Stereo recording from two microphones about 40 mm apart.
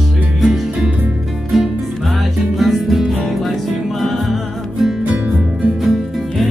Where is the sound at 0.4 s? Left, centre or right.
Centre.